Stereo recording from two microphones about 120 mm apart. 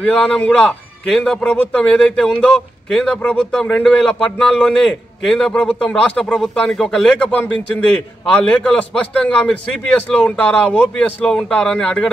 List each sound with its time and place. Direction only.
0.0 s speech: 10° left (ahead or behind)